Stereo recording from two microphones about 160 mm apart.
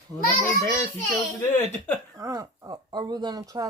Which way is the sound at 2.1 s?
20° right (ahead or behind).